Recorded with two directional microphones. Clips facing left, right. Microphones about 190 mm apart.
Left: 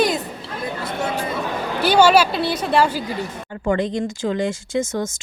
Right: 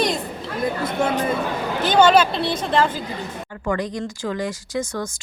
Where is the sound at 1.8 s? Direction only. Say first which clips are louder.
Left 1 dB; 10° left (ahead or behind).